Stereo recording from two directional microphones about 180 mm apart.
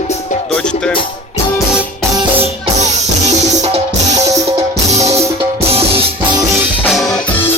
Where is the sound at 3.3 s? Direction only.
40° right (ahead or behind).